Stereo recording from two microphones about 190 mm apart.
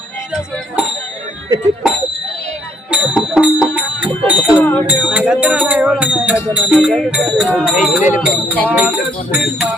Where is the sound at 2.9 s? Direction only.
5° right (ahead or behind).